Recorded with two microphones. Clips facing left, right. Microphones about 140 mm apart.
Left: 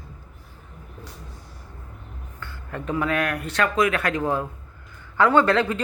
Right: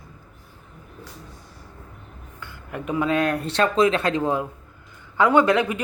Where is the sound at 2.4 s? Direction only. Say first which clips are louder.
Even; 15° right (ahead or behind).